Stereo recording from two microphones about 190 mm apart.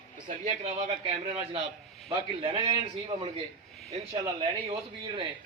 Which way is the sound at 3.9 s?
30° right (ahead or behind).